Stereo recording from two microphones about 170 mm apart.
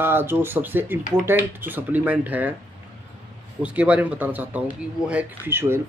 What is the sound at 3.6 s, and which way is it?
Speech, 10° right (ahead or behind).